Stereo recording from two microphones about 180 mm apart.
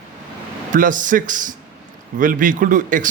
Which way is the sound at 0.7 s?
45° right (ahead or behind).